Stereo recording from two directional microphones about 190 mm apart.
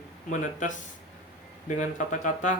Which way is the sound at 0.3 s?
40° left (ahead or behind).